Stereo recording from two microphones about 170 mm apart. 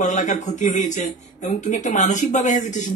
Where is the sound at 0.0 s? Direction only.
45° left (ahead or behind).